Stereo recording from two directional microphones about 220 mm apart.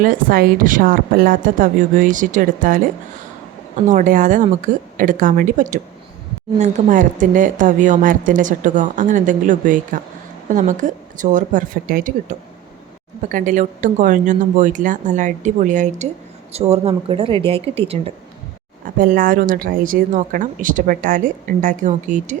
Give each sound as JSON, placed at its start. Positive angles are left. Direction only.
{"t": 0.0, "sound": "a woman's voice", "side_deg": -40}
{"t": 18.9, "sound": "a woman's voice", "side_deg": -40}